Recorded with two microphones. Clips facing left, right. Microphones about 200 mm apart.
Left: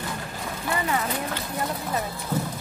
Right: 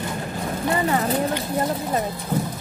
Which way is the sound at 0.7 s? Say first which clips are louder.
Right 5 dB; 35° right (ahead or behind).